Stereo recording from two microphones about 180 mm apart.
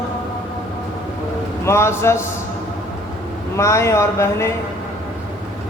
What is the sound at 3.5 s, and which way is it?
Speech, 15° left (ahead or behind).